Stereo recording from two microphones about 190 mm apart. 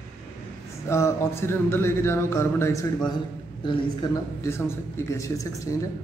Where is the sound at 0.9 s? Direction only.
15° left (ahead or behind).